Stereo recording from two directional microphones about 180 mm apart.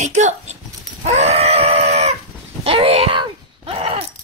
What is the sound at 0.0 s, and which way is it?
Speech, 40° right (ahead or behind).